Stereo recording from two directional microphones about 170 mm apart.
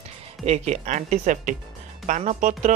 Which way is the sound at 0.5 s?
45° right (ahead or behind).